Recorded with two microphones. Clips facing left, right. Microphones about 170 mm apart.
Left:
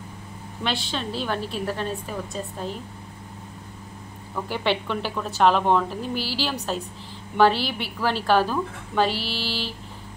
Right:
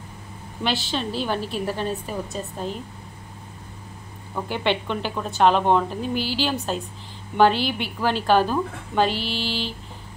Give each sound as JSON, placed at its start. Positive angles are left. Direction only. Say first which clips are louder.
{"t": 0.7, "sound": "a woman's voice", "louder": "right 3 dB", "side_deg": 0}
{"t": 4.5, "sound": "a woman's voice", "louder": "right 1 dB", "side_deg": 5}